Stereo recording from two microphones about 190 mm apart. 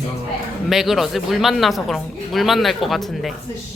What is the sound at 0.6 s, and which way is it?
Speech, centre (ahead or behind).